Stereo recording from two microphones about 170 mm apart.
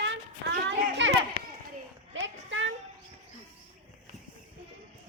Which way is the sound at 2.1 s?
90° right.